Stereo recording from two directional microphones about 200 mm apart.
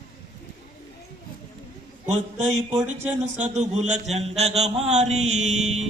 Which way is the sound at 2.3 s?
35° right (ahead or behind).